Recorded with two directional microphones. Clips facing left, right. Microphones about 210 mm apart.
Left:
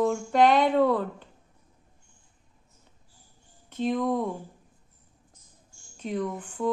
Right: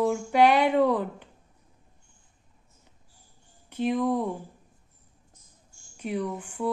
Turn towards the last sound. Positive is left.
turn(degrees=-10)  # may be behind; listen again after turning